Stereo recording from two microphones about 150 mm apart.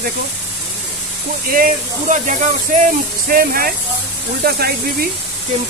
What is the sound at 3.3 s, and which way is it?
Speech, 75° right (ahead or behind).